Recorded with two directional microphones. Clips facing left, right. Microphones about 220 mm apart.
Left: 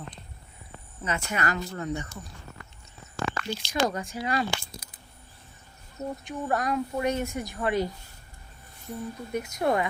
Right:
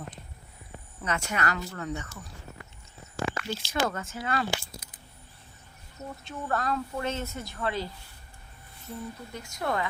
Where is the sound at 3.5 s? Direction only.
15° left (ahead or behind).